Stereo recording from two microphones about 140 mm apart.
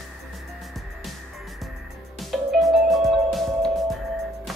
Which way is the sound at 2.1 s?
Centre (ahead or behind).